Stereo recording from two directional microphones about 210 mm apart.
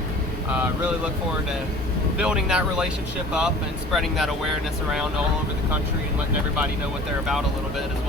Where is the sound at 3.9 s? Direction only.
Centre (ahead or behind).